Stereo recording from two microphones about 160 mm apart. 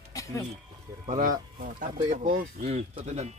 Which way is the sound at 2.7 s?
45° right (ahead or behind).